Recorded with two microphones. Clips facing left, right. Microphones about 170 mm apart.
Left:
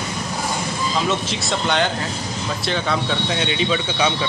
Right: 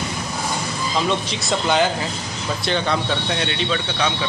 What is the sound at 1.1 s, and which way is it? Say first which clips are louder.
Speech: even; centre (ahead or behind).